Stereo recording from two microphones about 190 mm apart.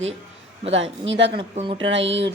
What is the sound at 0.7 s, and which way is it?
Speech, 75° right (ahead or behind).